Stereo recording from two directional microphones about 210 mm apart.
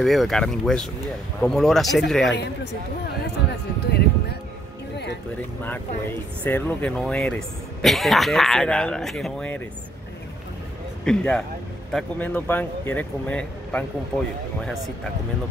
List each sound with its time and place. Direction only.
0.0 s speech: centre (ahead or behind)
3.8 s music: 50° left (ahead or behind)
6.4 s speech: 5° left (ahead or behind)
11.1 s speech: 5° left (ahead or behind)